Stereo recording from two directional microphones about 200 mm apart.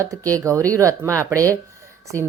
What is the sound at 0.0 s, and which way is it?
Speech, 15° right (ahead or behind).